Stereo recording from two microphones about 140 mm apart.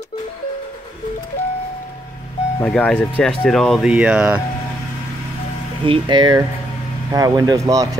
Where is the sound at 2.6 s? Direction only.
10° left (ahead or behind); by 4.4 s 10° right (ahead or behind).